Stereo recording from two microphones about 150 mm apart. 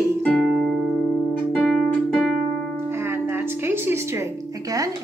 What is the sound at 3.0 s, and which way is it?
Music, 15° right (ahead or behind).